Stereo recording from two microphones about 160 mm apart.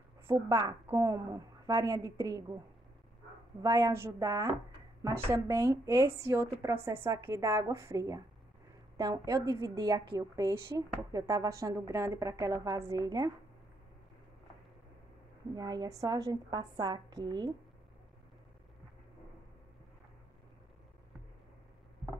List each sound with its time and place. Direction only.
0.3 s a woman's voice: 20° right (ahead or behind)
3.6 s a woman's voice: 20° right (ahead or behind)
15.5 s a woman's voice: 25° right (ahead or behind)